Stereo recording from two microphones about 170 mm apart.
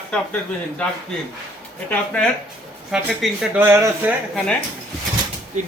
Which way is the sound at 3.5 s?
15° right (ahead or behind).